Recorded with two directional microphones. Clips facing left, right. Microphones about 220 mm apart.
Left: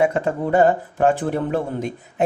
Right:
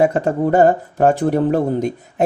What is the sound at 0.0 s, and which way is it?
Speech, 40° right (ahead or behind).